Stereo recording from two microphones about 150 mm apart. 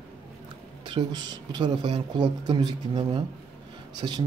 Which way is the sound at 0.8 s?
30° right (ahead or behind).